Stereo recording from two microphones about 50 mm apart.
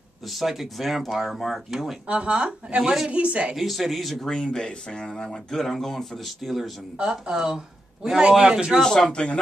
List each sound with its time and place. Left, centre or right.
0.2 s speech: centre
2.0 s speech: right
2.8 s a man's voice: centre
3.1 s speech: right
3.5 s speech: centre
7.0 s a man's voice: centre
8.8 s speech: centre